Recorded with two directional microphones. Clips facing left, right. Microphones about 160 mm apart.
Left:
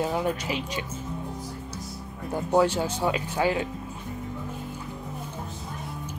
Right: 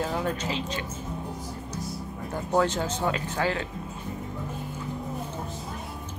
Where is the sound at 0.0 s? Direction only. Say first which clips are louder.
Left 2 dB; 15° left (ahead or behind).